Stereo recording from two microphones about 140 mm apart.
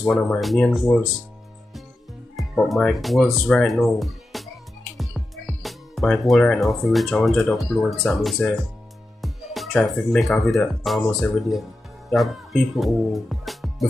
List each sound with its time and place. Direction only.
0.1 s speech: centre (ahead or behind)
2.3 s speech: centre (ahead or behind)
12.7 s speech: centre (ahead or behind)